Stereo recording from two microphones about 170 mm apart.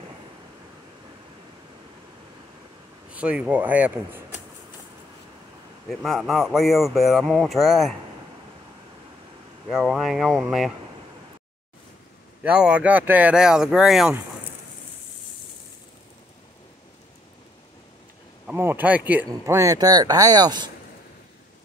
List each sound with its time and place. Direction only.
3.1 s speech: 5° right (ahead or behind)
5.9 s speech: centre (ahead or behind)
9.7 s speech: 5° right (ahead or behind)
12.4 s speech: 5° right (ahead or behind)
18.5 s speech: 10° right (ahead or behind)